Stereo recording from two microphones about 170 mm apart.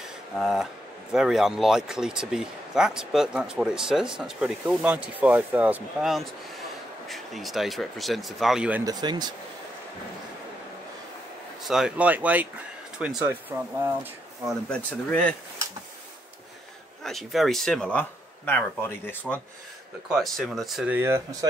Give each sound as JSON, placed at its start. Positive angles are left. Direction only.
{"t": 0.4, "sound": "speech", "side_deg": 0}
{"t": 8.8, "sound": "speech", "side_deg": -25}
{"t": 11.6, "sound": "speech", "side_deg": -5}
{"t": 14.4, "sound": "speech", "side_deg": 0}
{"t": 17.0, "sound": "speech", "side_deg": 0}
{"t": 20.1, "sound": "speech", "side_deg": 0}